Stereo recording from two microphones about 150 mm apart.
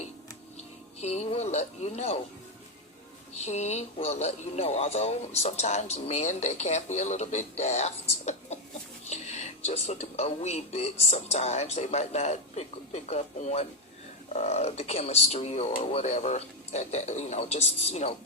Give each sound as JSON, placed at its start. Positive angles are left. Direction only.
{"t": 1.0, "sound": "speech", "side_deg": 45}
{"t": 3.3, "sound": "speech", "side_deg": 50}